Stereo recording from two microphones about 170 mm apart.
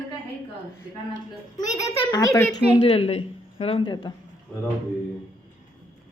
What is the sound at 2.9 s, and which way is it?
Speech, 35° left (ahead or behind).